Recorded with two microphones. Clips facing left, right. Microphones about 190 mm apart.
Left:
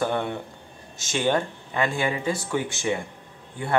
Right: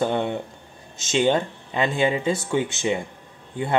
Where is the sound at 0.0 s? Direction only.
20° right (ahead or behind).